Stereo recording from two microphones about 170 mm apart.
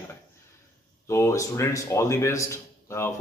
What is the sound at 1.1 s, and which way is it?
Speech, 15° left (ahead or behind).